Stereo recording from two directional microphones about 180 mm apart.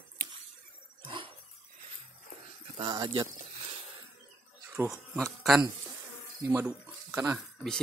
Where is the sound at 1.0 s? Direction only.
30° right (ahead or behind).